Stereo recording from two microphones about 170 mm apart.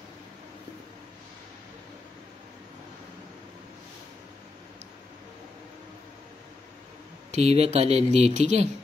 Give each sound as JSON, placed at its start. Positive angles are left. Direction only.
{"t": 7.2, "sound": "speech", "side_deg": -40}